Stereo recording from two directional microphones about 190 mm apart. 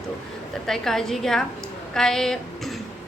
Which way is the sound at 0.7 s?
Centre (ahead or behind).